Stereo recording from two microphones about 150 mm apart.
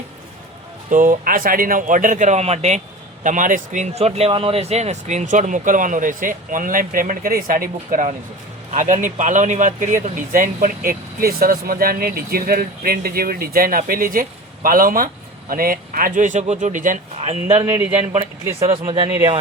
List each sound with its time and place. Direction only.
0.9 s speech: 60° right (ahead or behind)
3.2 s speech: 60° right (ahead or behind)
17.2 s speech: 40° right (ahead or behind)
17.6 s speech: 20° right (ahead or behind)